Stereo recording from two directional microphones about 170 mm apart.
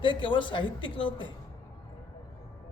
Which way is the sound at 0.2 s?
30° left (ahead or behind).